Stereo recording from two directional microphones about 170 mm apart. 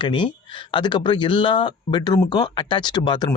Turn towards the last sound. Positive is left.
turn(degrees=25)  # may be behind; listen again after turning